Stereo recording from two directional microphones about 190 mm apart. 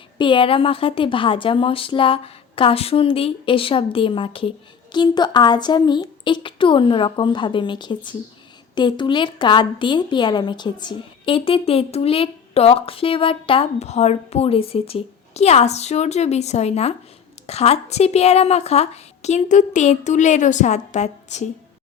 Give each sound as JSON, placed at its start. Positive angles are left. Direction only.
{"t": 0.2, "sound": "a woman's voice", "side_deg": 25}